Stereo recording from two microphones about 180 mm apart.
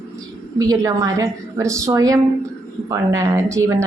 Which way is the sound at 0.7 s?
20° right (ahead or behind).